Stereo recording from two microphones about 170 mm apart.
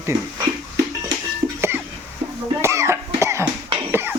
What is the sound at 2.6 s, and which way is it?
Cough, 15° right (ahead or behind).